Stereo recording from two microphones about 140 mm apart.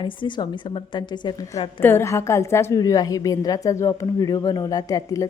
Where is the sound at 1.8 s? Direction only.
15° left (ahead or behind).